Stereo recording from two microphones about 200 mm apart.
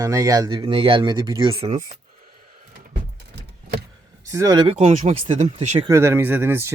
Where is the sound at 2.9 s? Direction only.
55° right (ahead or behind).